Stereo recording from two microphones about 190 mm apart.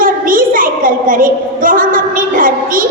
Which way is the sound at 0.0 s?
45° right (ahead or behind).